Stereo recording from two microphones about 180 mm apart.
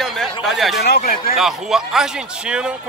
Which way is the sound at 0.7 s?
60° left (ahead or behind).